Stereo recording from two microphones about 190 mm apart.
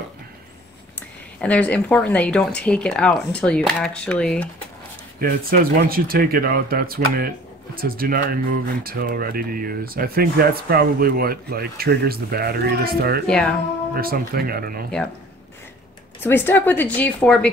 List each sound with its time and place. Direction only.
1.4 s speech: 5° left (ahead or behind)
5.2 s speech: 50° right (ahead or behind)
16.2 s a woman's voice: 10° left (ahead or behind)